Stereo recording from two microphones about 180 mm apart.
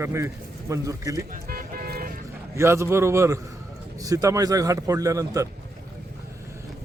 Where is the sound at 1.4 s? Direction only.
55° right (ahead or behind).